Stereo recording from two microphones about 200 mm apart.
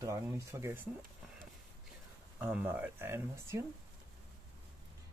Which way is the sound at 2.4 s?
10° right (ahead or behind).